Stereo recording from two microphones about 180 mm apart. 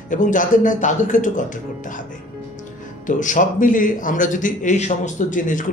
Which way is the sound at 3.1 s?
45° left (ahead or behind).